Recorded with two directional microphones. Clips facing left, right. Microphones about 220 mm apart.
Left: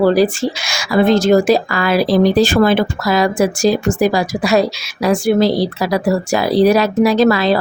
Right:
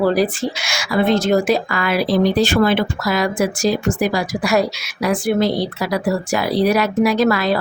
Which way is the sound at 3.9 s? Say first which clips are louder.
Left 4 dB; 30° left (ahead or behind).